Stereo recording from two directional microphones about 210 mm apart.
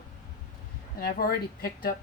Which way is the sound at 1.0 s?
45° left (ahead or behind).